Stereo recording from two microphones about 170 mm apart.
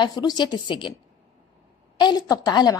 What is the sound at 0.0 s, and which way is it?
Speech, 25° left (ahead or behind).